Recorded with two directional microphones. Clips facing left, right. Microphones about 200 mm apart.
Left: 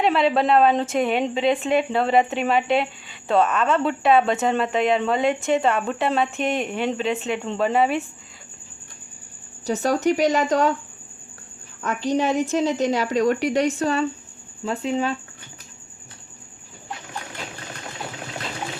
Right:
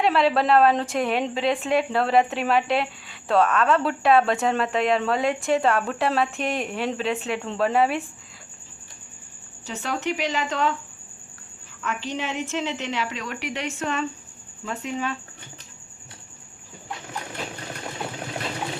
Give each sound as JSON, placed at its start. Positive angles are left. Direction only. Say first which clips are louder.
{"t": 0.0, "sound": "a woman's voice", "louder": "left 1 dB", "side_deg": 0}
{"t": 9.6, "sound": "a woman's voice", "louder": "left 8 dB", "side_deg": 40}
{"t": 11.8, "sound": "a woman's voice", "louder": "left 7 dB", "side_deg": 40}